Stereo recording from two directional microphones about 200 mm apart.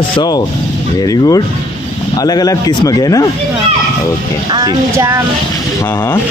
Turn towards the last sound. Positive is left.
turn(degrees=-20)  # may be behind; listen again after turning